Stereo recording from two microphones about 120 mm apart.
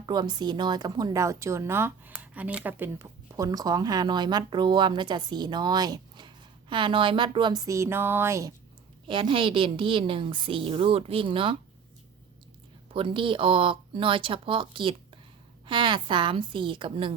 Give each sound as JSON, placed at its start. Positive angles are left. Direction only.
{"t": 0.0, "sound": "speech", "side_deg": -35}
{"t": 3.3, "sound": "speech", "side_deg": -30}
{"t": 9.0, "sound": "a woman's voice", "side_deg": -45}
{"t": 12.9, "sound": "a woman's voice", "side_deg": -45}